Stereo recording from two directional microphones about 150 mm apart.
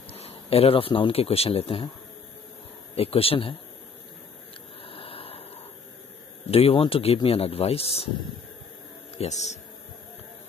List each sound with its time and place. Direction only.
0.1 s speech: 45° left (ahead or behind)
3.0 s speech: 40° left (ahead or behind)
4.8 s a sound: 40° left (ahead or behind)
6.5 s speech: 40° left (ahead or behind)